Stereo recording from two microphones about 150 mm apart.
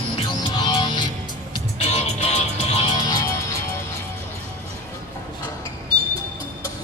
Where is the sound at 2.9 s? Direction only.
25° left (ahead or behind).